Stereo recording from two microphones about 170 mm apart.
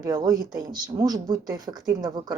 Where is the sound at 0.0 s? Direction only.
20° right (ahead or behind).